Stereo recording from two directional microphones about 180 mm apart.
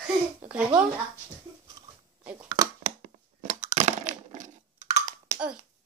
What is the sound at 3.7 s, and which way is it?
Crushing, 40° right (ahead or behind).